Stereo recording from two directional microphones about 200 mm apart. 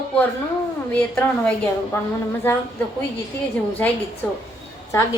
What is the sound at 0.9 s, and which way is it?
Speech, 5° left (ahead or behind).